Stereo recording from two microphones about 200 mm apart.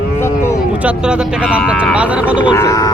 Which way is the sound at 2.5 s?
15° left (ahead or behind).